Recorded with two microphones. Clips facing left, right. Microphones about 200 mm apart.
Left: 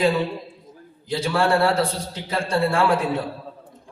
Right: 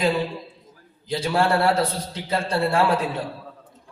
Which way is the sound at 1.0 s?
30° right (ahead or behind).